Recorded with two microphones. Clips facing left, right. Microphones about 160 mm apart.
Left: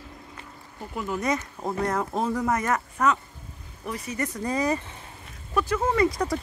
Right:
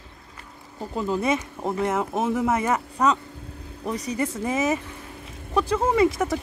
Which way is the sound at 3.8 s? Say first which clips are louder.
Right 5 dB; 30° right (ahead or behind).